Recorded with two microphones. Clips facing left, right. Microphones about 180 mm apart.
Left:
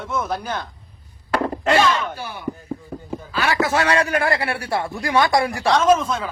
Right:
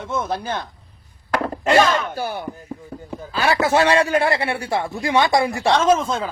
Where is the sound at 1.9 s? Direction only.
40° right (ahead or behind).